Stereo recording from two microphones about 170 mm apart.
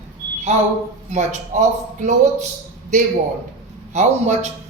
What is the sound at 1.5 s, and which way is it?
Speech, 45° right (ahead or behind).